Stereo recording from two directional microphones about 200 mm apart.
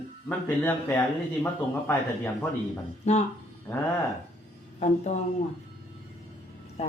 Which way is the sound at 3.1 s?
35° left (ahead or behind).